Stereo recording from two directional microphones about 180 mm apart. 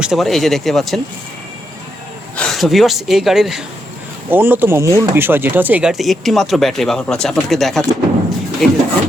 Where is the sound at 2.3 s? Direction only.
Centre (ahead or behind).